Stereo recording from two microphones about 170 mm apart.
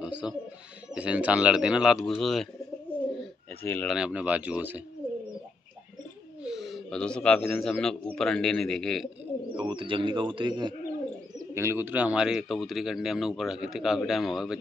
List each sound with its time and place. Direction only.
0.0 s bird: 5° right (ahead or behind)
0.9 s speech: 5° right (ahead or behind)
3.6 s speech: 10° left (ahead or behind)
3.9 s speech: 5° right (ahead or behind)
6.4 s speech: centre (ahead or behind)
9.5 s speech: 30° right (ahead or behind)
11.3 s speech: 15° right (ahead or behind)